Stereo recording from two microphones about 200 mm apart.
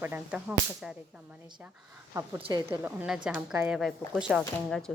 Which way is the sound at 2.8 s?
5° right (ahead or behind).